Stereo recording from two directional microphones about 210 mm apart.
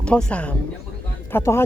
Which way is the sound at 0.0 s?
5° left (ahead or behind).